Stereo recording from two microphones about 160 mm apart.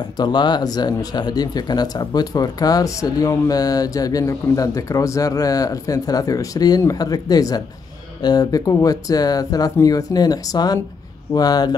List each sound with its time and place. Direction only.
0.2 s speech: 25° left (ahead or behind)